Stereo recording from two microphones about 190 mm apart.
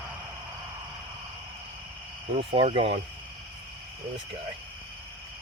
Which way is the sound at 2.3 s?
30° right (ahead or behind).